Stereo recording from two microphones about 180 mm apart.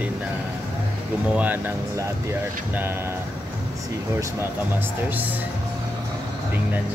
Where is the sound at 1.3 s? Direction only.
10° right (ahead or behind).